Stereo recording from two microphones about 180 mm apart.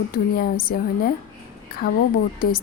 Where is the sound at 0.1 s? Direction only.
55° left (ahead or behind).